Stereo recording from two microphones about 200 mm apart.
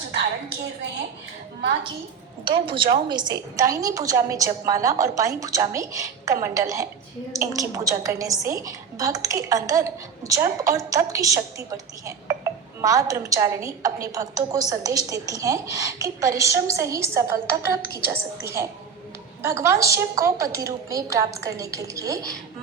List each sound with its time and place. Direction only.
2.4 s a woman's voice: 25° right (ahead or behind)